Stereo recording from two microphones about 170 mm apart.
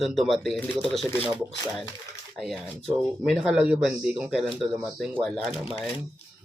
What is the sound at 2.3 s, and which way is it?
Speech, 5° right (ahead or behind).